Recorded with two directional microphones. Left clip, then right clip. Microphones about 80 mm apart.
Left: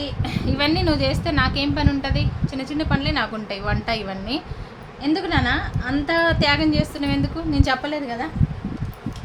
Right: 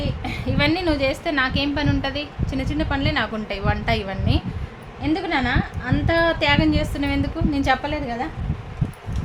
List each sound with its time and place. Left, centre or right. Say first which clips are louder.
0.3 s a woman's voice: even; right
5.0 s a woman's voice: left 1 dB; centre